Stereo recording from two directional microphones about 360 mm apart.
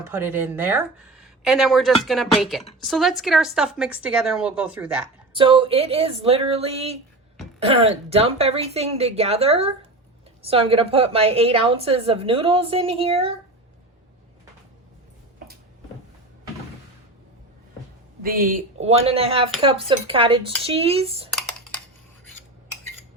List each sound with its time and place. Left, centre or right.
0.0 s a woman's voice: centre
18.2 s a woman's voice: right
21.3 s computer keyboard: centre